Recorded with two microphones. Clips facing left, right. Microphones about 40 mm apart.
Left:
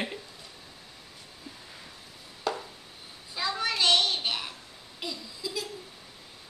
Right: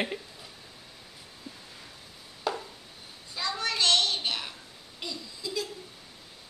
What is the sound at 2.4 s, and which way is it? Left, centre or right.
Chopping, centre.